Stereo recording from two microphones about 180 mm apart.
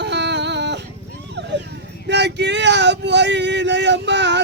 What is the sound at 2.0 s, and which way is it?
Speech, 75° right (ahead or behind).